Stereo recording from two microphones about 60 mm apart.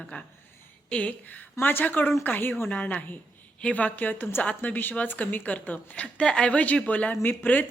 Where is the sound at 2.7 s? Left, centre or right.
Left.